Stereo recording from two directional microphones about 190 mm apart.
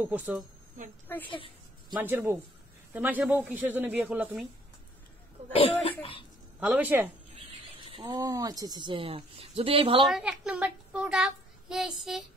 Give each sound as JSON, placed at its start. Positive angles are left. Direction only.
{"t": 0.0, "sound": "speech", "side_deg": -10}
{"t": 1.2, "sound": "speech", "side_deg": 25}
{"t": 2.0, "sound": "speech", "side_deg": -10}
{"t": 5.5, "sound": "speech", "side_deg": 30}
{"t": 6.6, "sound": "speech", "side_deg": -10}
{"t": 7.3, "sound": "speech", "side_deg": -25}
{"t": 10.0, "sound": "a child's voice", "side_deg": -5}